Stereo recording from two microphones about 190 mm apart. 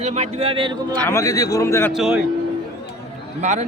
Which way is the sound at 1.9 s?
5° right (ahead or behind).